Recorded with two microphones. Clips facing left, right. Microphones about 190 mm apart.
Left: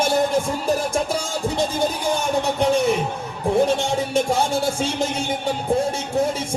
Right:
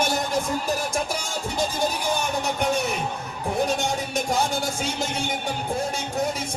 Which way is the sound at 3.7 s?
30° left (ahead or behind).